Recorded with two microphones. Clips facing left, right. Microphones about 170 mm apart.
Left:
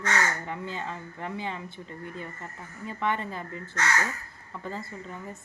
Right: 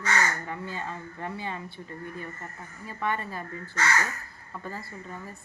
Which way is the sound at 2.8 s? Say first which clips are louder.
Left 1 dB; 20° left (ahead or behind).